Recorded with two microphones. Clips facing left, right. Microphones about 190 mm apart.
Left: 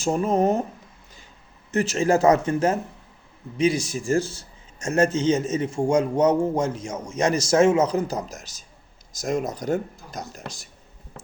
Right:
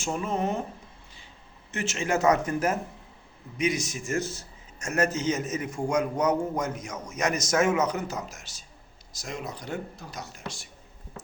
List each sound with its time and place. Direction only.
0.0 s speech: 40° left (ahead or behind)
1.7 s a man's voice: 35° left (ahead or behind)